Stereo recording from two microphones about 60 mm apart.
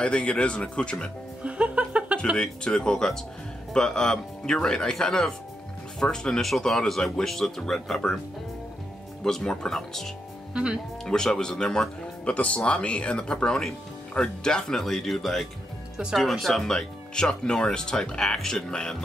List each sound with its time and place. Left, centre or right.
0.0 s speech: centre
1.4 s music: right
2.3 s speech: centre
9.2 s speech: centre
10.5 s speech: centre
11.1 s speech: centre